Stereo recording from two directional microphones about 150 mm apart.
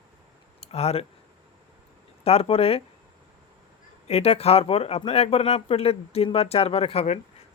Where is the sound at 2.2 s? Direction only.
40° left (ahead or behind).